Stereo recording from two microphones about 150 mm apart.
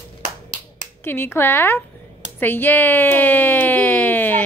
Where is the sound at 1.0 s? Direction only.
15° left (ahead or behind).